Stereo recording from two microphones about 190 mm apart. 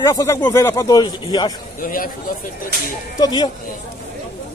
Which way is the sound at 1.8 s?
45° left (ahead or behind).